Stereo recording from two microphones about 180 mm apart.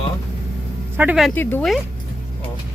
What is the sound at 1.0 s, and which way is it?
Speech, 5° right (ahead or behind).